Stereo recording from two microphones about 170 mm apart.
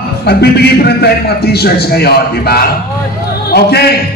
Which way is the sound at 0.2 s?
70° left (ahead or behind).